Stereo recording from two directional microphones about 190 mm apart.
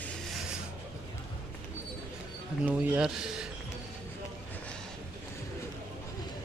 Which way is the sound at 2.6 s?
10° right (ahead or behind).